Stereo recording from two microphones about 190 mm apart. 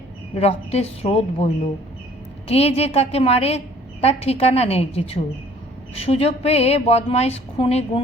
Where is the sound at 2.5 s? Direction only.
35° left (ahead or behind).